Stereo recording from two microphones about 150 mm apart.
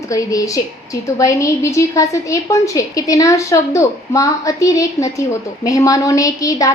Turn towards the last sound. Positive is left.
turn(degrees=20)  # may be behind; listen again after turning